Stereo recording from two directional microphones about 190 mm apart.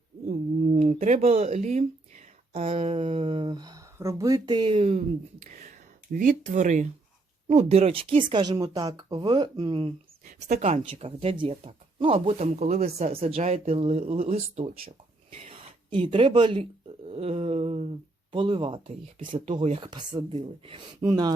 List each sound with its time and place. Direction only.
0.3 s speech: 35° right (ahead or behind)
6.1 s speech: 40° right (ahead or behind)
10.2 s speech: 40° right (ahead or behind)